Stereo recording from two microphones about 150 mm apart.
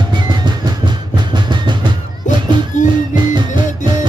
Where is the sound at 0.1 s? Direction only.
30° right (ahead or behind).